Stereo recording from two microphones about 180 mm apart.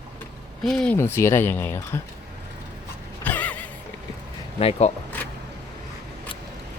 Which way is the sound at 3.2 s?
10° left (ahead or behind).